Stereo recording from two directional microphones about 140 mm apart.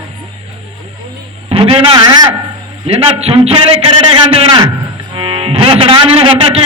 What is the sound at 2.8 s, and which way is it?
A man's voice, 45° right (ahead or behind).